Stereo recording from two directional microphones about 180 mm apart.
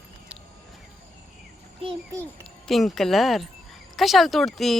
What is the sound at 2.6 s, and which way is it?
Speech, centre (ahead or behind).